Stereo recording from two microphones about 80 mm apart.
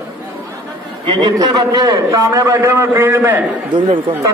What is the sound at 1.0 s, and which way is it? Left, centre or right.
Speech, right.